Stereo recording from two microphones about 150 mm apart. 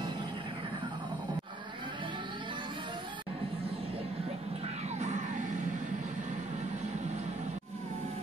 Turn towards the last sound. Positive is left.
turn(degrees=-50)  # may be behind; listen again after turning